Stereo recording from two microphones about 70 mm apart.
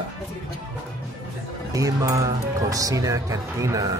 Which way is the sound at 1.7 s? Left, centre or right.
Right.